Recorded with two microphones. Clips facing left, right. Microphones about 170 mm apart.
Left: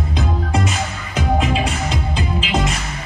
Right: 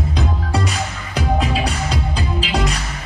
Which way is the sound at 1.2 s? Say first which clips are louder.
Left 1 dB; 35° right (ahead or behind).